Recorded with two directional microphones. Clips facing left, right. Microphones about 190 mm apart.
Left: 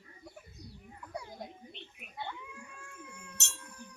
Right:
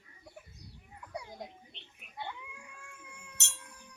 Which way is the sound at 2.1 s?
15° right (ahead or behind).